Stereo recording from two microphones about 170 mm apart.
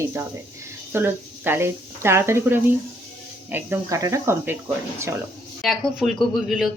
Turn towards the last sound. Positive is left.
turn(degrees=0)  # may be behind; listen again after turning